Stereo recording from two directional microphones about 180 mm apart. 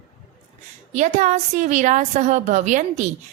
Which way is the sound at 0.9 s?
40° right (ahead or behind).